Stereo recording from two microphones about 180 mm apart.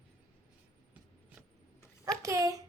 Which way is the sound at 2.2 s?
20° right (ahead or behind).